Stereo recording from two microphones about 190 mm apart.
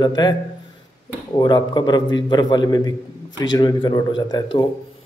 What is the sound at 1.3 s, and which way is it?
A man's voice, 20° left (ahead or behind).